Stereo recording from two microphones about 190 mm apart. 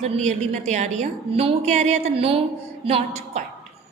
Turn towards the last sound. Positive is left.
turn(degrees=-35)  # may be behind; listen again after turning